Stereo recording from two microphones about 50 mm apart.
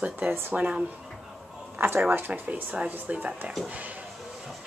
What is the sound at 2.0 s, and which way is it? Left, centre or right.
Speech, right.